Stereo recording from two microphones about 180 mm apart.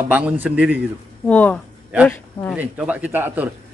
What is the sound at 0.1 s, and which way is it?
Speech, 10° right (ahead or behind).